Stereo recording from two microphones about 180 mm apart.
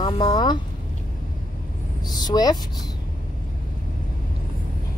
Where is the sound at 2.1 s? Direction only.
20° left (ahead or behind).